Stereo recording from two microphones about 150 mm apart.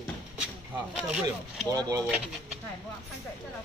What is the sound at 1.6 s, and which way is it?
Speech, 25° right (ahead or behind).